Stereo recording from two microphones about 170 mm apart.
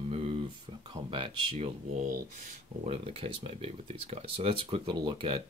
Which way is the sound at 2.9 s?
35° right (ahead or behind).